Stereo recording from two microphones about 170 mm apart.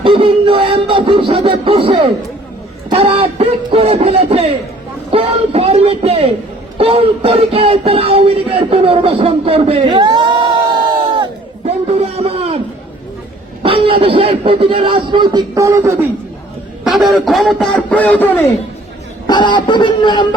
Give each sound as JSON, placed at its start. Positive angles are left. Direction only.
{"t": 0.0, "sound": "music", "side_deg": -30}
{"t": 11.6, "sound": "a sound", "side_deg": -40}
{"t": 13.6, "sound": "music", "side_deg": -30}
{"t": 16.8, "sound": "speech", "side_deg": 0}
{"t": 19.3, "sound": "speech", "side_deg": 25}